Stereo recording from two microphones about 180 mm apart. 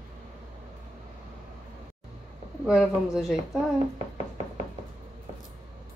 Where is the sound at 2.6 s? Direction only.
Centre (ahead or behind).